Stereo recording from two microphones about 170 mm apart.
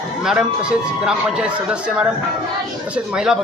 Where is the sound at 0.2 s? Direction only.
5° right (ahead or behind).